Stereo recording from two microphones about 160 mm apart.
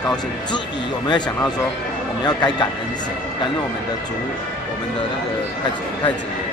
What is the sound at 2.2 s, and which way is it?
Speech, 25° left (ahead or behind).